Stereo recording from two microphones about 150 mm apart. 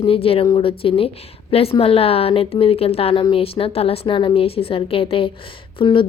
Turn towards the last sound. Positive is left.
turn(degrees=35)  # may be behind; listen again after turning